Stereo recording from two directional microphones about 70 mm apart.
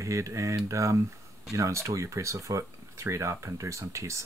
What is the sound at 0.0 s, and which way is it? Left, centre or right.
Speech, right.